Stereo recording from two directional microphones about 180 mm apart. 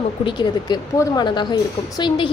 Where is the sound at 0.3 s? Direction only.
25° left (ahead or behind).